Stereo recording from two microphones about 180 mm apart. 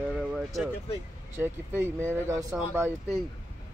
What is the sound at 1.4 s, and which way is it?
Speech, 10° right (ahead or behind).